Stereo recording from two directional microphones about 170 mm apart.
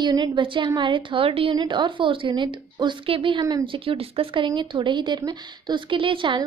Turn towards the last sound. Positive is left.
turn(degrees=-30)  # may be behind; listen again after turning